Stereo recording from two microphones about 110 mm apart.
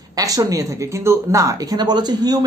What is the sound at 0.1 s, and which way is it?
Speech, 35° right (ahead or behind).